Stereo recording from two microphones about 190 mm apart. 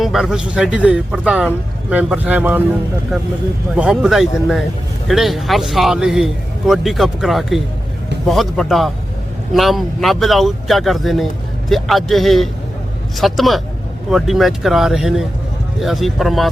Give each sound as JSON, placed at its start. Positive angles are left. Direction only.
{"t": 0.0, "sound": "a man's voice", "side_deg": 0}
{"t": 3.8, "sound": "a man's voice", "side_deg": -5}